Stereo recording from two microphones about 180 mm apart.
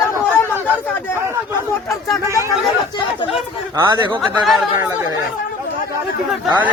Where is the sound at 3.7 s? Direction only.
25° right (ahead or behind).